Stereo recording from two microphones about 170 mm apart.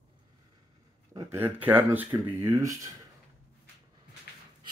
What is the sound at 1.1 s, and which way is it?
Speech, 20° right (ahead or behind).